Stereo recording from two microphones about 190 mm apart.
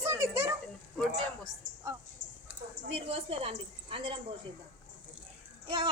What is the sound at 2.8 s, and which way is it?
A woman's voice, 30° right (ahead or behind).